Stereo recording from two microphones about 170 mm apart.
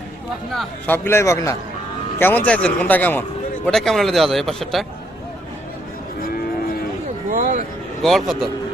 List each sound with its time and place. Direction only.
0.5 s speech: centre (ahead or behind)
0.9 s speech: 15° left (ahead or behind)
7.3 s a sound: 50° right (ahead or behind)
8.0 s speech: centre (ahead or behind)